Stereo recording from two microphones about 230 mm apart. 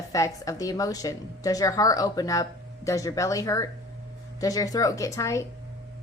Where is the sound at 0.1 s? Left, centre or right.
Centre.